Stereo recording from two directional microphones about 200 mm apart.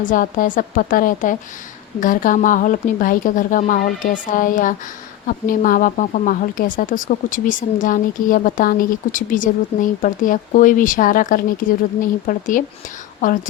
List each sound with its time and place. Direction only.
0.0 s a woman's voice: 40° left (ahead or behind)